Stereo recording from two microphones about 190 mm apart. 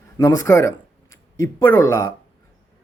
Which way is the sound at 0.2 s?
15° left (ahead or behind).